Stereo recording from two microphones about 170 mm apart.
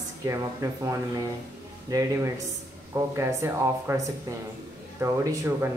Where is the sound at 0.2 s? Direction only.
20° right (ahead or behind).